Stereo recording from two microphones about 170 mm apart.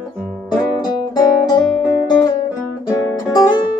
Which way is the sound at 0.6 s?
25° left (ahead or behind).